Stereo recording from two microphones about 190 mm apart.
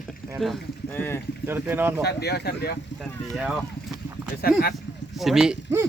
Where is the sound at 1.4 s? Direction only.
10° right (ahead or behind).